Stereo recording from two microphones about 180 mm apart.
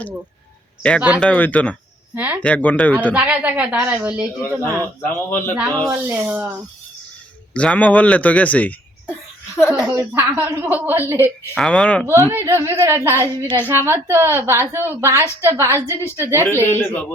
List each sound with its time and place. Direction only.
0.8 s a man's voice: 5° left (ahead or behind)
2.1 s a woman's voice: 10° right (ahead or behind)
2.4 s a man's voice: 10° left (ahead or behind)
3.1 s a woman's voice: 10° right (ahead or behind)
5.0 s a man's voice: 10° left (ahead or behind)
5.5 s speech: centre (ahead or behind)
5.9 s a woman's voice: 10° right (ahead or behind)
7.5 s a man's voice: 5° left (ahead or behind)
9.8 s a woman's voice: 10° right (ahead or behind)
11.5 s speech: 5° left (ahead or behind)
12.3 s a woman's voice: 15° right (ahead or behind)
13.1 s a man's voice: 10° left (ahead or behind)
13.7 s a woman's voice: 15° right (ahead or behind)
16.6 s a man's voice: 10° left (ahead or behind)